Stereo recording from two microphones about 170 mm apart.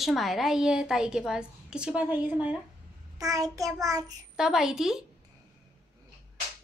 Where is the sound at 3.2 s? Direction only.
20° right (ahead or behind).